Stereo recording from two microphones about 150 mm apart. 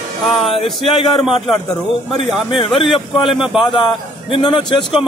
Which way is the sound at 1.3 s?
35° left (ahead or behind).